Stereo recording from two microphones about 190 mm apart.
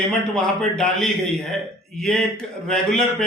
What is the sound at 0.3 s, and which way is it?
A man's voice, 5° left (ahead or behind).